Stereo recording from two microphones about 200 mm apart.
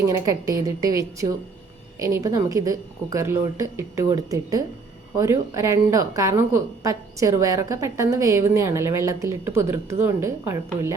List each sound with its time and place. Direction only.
0.0 s a woman's voice: 15° right (ahead or behind)